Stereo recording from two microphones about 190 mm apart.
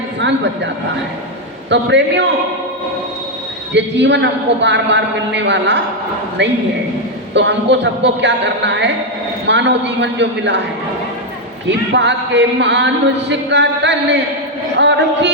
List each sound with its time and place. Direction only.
0.2 s speech: 70° right (ahead or behind)
1.7 s speech: 70° right (ahead or behind)
3.8 s speech: 70° right (ahead or behind)
11.9 s a man's voice: 65° right (ahead or behind)